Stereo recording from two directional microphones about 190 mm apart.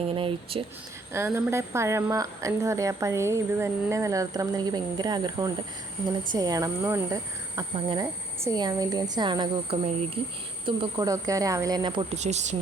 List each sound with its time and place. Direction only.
0.1 s speech: 30° right (ahead or behind)
1.1 s a woman's voice: 15° right (ahead or behind)
12.1 s speech: 35° right (ahead or behind)